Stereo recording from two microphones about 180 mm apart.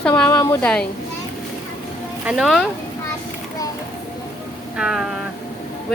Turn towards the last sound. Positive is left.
turn(degrees=-5)  # may be behind; listen again after turning